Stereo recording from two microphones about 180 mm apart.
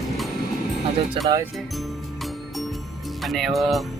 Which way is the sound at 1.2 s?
30° right (ahead or behind).